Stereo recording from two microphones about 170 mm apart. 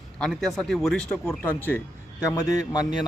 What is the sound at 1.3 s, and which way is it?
A man's voice, 10° left (ahead or behind).